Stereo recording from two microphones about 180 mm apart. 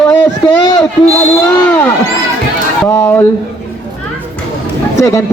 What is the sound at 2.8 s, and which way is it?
Speech, 15° left (ahead or behind).